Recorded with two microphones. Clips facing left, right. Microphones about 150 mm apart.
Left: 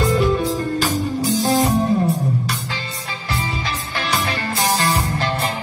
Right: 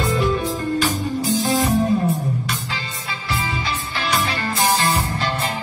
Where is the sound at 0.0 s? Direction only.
40° left (ahead or behind).